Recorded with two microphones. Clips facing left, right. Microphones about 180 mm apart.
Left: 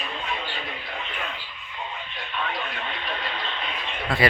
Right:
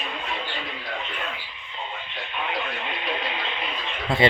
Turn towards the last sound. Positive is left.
turn(degrees=-25)  # may be behind; listen again after turning